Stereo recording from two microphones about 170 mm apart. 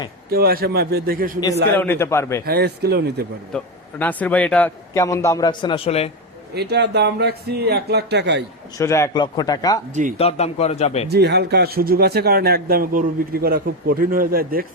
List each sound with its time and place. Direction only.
0.3 s a man's voice: 65° right (ahead or behind)
1.7 s a man's voice: 10° left (ahead or behind)
2.5 s speech: 70° right (ahead or behind)
3.5 s a man's voice: 10° left (ahead or behind); by 6.1 s 35° left (ahead or behind)
6.5 s speech: 75° right (ahead or behind)
8.8 s a man's voice: 15° left (ahead or behind)
9.9 s speech: 50° right (ahead or behind)
10.2 s a man's voice: 35° left (ahead or behind)
11.1 s a man's voice: 75° right (ahead or behind); by 14.7 s 60° right (ahead or behind)